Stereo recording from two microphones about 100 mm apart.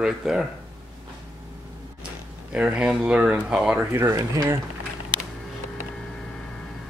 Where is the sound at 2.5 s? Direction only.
10° right (ahead or behind).